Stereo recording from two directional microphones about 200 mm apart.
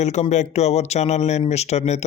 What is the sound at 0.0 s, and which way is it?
Speech, 35° left (ahead or behind).